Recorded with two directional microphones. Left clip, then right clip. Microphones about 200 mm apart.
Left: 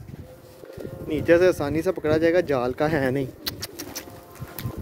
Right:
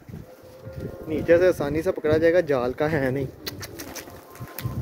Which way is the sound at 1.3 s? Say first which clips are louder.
Even; 5° left (ahead or behind).